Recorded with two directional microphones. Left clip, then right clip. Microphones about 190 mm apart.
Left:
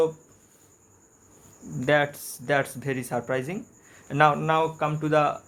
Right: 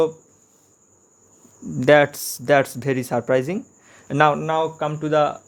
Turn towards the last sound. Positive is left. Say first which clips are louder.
# right 3 dB
turn(degrees=-20)  # may be behind; listen again after turning